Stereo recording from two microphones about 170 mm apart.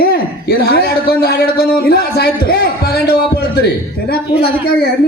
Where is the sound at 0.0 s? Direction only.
60° left (ahead or behind).